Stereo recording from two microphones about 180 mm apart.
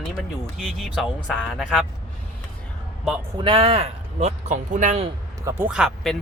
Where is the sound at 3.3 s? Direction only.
30° right (ahead or behind).